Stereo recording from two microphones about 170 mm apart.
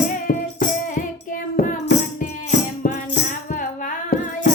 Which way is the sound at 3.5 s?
50° left (ahead or behind).